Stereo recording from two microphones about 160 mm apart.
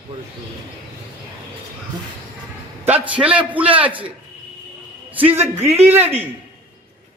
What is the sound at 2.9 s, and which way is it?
Speech, 10° right (ahead or behind).